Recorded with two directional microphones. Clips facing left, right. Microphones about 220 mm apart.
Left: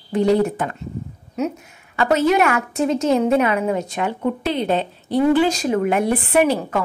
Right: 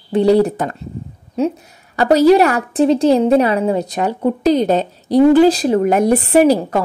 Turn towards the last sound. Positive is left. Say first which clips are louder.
# right 6 dB
turn(degrees=-35)  # may be behind; listen again after turning